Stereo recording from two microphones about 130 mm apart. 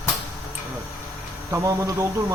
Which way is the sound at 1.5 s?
25° right (ahead or behind).